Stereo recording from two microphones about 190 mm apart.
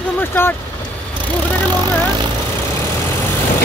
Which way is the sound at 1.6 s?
20° right (ahead or behind).